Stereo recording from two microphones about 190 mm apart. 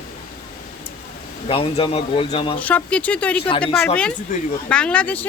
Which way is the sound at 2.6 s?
10° left (ahead or behind).